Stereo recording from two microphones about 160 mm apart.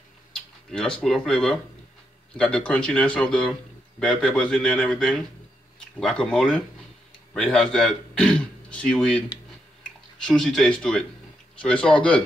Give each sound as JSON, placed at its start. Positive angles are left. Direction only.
{"t": 0.7, "sound": "speech", "side_deg": 5}
{"t": 10.2, "sound": "speech", "side_deg": 5}